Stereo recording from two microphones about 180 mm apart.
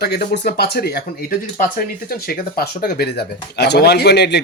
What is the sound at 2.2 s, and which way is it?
Speech, 55° left (ahead or behind).